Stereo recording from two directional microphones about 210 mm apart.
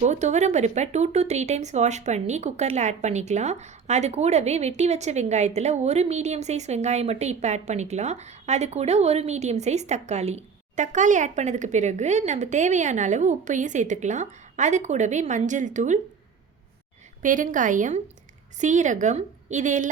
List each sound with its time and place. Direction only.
0.0 s speech: 35° right (ahead or behind)
17.2 s speech: 40° right (ahead or behind)